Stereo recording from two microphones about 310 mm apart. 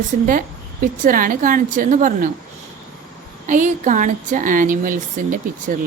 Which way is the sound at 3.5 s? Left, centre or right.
Right.